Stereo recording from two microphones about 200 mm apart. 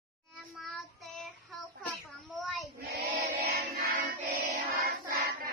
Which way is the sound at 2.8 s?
55° right (ahead or behind).